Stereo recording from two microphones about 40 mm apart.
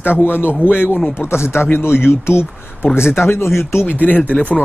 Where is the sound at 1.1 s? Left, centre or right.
Left.